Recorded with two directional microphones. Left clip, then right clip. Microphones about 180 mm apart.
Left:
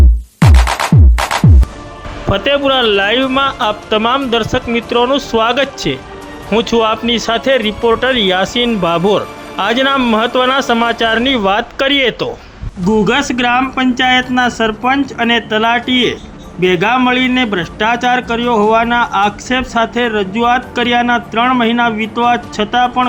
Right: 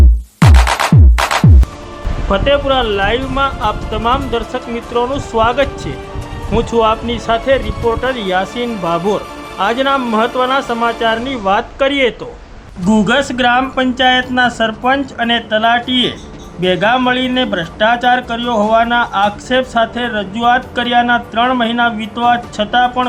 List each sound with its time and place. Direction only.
0.3 s music: centre (ahead or behind)
2.3 s speech: 30° left (ahead or behind)
12.8 s a man's voice: 10° left (ahead or behind)